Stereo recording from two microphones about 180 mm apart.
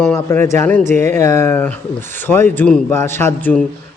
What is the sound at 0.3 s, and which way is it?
Speech, 15° left (ahead or behind).